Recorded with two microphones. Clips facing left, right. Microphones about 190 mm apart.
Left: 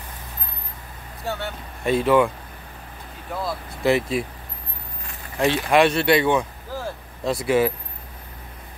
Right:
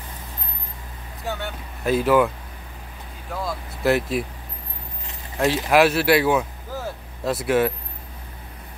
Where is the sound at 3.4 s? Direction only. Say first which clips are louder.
Even; centre (ahead or behind).